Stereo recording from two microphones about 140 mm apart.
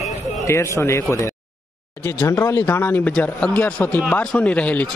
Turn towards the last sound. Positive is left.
turn(degrees=10)  # may be behind; listen again after turning